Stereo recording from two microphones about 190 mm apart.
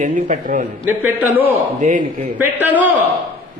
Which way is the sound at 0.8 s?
10° right (ahead or behind).